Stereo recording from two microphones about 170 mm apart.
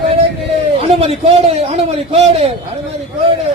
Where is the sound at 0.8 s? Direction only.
35° right (ahead or behind).